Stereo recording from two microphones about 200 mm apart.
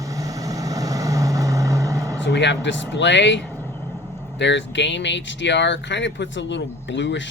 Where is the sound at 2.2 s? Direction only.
60° left (ahead or behind).